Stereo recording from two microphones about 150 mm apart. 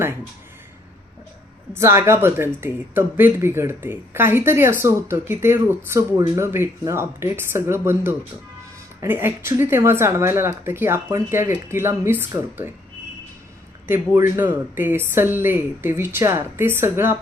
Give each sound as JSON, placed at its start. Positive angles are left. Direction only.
{"t": 1.7, "sound": "speech", "side_deg": -15}
{"t": 13.8, "sound": "speech", "side_deg": -15}